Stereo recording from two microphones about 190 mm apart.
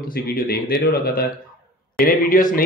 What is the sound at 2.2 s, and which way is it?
Speech, 45° left (ahead or behind).